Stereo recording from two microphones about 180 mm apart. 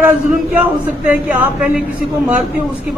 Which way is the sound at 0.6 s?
10° right (ahead or behind).